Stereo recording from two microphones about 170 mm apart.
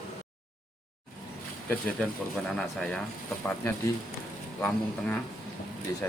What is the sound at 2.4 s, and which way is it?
Speech, 5° left (ahead or behind).